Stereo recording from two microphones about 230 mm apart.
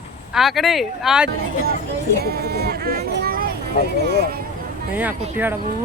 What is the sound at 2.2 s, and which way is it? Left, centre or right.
Speech, right.